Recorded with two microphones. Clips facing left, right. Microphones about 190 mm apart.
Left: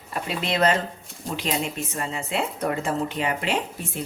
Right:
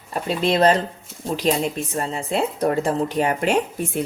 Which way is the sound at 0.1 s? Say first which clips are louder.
Right 6 dB; 35° right (ahead or behind).